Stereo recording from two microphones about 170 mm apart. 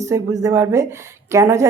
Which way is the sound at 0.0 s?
20° right (ahead or behind).